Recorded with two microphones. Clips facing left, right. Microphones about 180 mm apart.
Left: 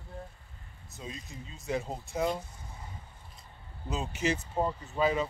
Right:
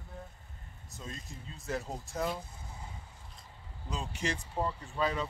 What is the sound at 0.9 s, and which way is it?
Speech, centre (ahead or behind).